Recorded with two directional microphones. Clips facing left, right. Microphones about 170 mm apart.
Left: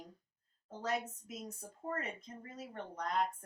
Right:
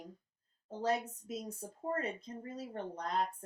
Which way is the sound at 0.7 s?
30° right (ahead or behind).